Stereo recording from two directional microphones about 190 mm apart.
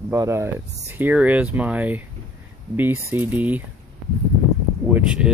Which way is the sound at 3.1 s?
10° right (ahead or behind).